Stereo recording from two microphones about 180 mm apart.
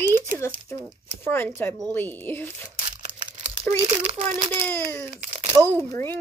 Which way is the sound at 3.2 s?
30° right (ahead or behind).